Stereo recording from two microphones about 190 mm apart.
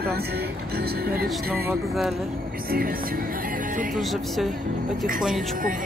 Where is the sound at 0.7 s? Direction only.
55° right (ahead or behind).